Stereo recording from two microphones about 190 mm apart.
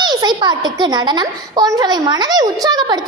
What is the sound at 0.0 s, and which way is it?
A woman's voice, 20° right (ahead or behind).